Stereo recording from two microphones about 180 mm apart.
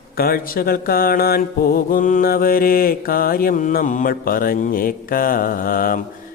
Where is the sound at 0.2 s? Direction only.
55° left (ahead or behind).